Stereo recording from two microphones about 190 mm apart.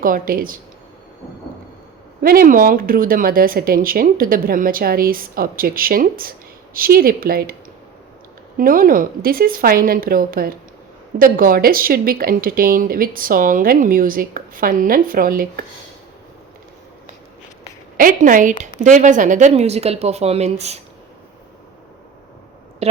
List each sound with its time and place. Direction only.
0.0 s speech: 50° right (ahead or behind)
2.2 s speech: 50° right (ahead or behind)
8.5 s speech: 50° right (ahead or behind)
17.9 s speech: 45° right (ahead or behind)
22.8 s speech: 35° right (ahead or behind)